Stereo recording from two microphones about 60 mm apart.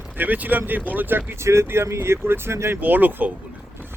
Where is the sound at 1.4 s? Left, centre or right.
Right.